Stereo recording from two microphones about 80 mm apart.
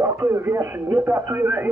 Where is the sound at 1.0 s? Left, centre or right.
Right.